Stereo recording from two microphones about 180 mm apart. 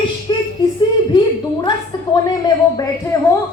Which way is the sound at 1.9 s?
25° left (ahead or behind).